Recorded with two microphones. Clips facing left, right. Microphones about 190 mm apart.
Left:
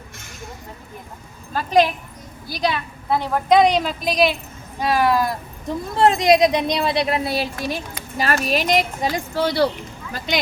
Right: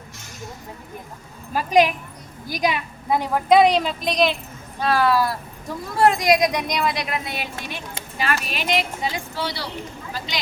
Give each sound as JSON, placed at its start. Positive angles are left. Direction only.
{"t": 1.5, "sound": "a woman's voice", "side_deg": -10}
{"t": 4.8, "sound": "a woman's voice", "side_deg": 15}